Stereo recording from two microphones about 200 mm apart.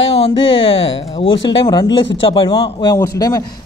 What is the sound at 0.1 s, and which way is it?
A man's voice, 30° left (ahead or behind).